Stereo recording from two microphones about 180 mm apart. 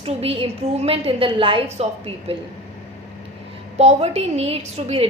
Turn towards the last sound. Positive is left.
turn(degrees=-35)  # may be behind; listen again after turning